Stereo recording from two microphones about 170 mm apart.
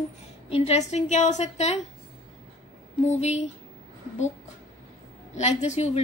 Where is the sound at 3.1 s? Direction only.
40° left (ahead or behind).